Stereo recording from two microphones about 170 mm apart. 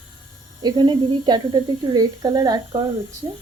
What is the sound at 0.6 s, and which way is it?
Speech, 25° right (ahead or behind).